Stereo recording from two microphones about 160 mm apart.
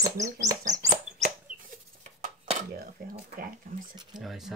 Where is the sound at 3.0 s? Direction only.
65° right (ahead or behind).